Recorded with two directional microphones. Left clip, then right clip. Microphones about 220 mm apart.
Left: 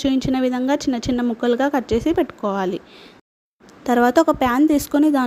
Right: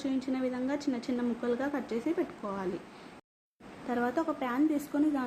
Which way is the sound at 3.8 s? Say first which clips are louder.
Left 16 dB; 45° left (ahead or behind).